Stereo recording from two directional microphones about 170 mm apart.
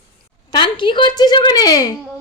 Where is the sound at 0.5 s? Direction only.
30° left (ahead or behind).